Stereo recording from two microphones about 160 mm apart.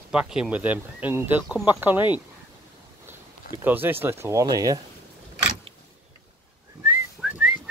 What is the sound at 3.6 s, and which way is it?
Speech, 10° right (ahead or behind).